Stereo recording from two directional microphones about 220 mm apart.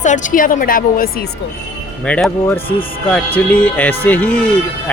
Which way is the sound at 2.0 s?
5° left (ahead or behind).